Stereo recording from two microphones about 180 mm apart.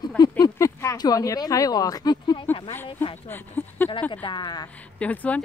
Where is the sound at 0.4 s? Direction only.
15° left (ahead or behind).